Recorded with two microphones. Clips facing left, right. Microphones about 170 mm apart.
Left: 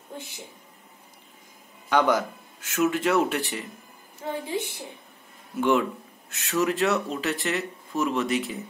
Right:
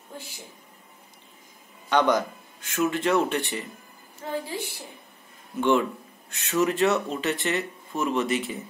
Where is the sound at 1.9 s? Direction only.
10° left (ahead or behind).